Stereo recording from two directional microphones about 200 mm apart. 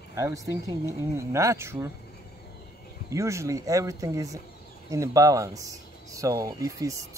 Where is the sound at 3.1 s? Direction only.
15° right (ahead or behind).